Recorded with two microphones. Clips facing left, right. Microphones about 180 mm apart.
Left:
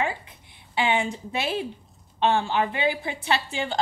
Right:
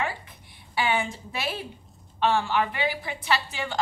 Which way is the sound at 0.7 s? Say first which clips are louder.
Left 2 dB; 25° left (ahead or behind).